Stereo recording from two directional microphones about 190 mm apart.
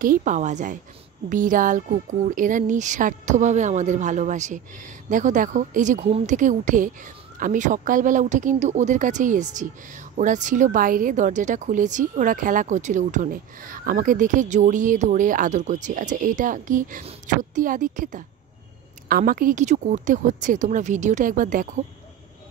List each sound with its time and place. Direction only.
0.0 s speech: 45° right (ahead or behind)